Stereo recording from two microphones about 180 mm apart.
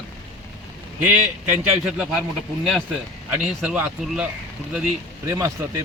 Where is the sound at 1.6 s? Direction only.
5° right (ahead or behind).